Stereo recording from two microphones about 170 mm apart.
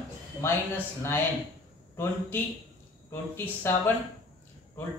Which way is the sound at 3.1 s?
15° left (ahead or behind).